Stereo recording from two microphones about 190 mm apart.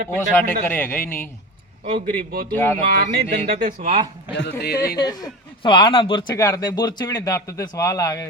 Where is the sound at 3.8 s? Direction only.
30° right (ahead or behind).